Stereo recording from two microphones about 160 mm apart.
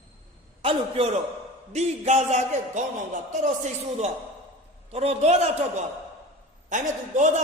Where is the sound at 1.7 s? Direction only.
45° right (ahead or behind).